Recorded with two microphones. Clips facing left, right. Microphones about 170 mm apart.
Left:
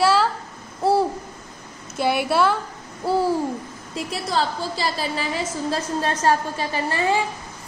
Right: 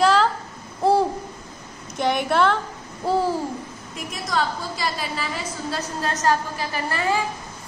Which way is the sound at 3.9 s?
30° left (ahead or behind).